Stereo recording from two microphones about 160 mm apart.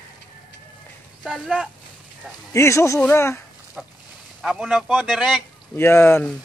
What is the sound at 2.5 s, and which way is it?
Speech, 20° left (ahead or behind).